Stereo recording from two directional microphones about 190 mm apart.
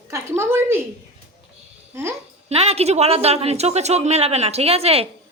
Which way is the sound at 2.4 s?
35° right (ahead or behind).